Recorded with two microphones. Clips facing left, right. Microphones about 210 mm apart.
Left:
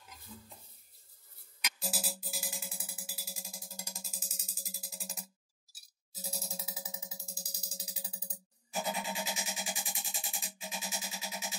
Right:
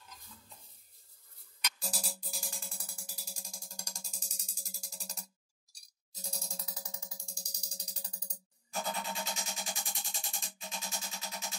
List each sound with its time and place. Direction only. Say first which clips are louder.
1.9 s music: left 4 dB; 5° left (ahead or behind)